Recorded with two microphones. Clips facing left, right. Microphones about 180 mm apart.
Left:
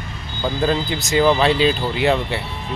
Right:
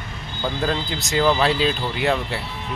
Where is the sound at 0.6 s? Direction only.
Centre (ahead or behind).